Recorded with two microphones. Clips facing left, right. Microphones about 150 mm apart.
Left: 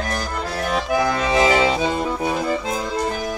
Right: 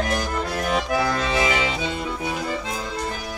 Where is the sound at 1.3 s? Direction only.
35° left (ahead or behind).